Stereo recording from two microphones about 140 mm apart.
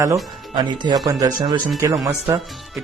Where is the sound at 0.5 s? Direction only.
35° right (ahead or behind).